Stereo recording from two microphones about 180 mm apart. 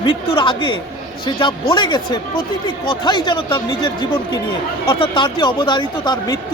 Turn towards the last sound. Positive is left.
turn(degrees=25)  # may be behind; listen again after turning